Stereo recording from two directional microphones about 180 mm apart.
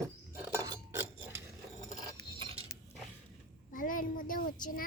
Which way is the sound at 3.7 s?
50° left (ahead or behind).